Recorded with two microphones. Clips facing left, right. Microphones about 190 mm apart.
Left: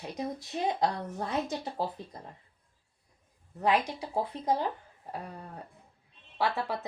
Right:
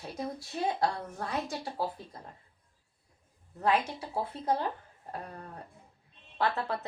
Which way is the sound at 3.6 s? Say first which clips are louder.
Left 1 dB; 15° left (ahead or behind).